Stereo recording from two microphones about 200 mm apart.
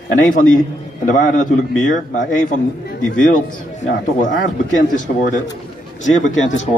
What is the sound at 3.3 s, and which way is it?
A man's voice, 45° left (ahead or behind).